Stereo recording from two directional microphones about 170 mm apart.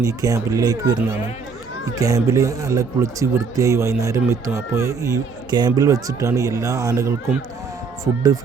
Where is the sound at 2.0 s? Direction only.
20° right (ahead or behind).